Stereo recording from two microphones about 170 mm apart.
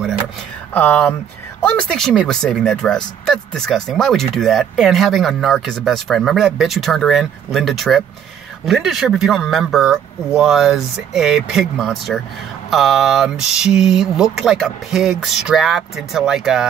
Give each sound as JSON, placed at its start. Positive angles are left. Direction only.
{"t": 0.7, "sound": "speech", "side_deg": 10}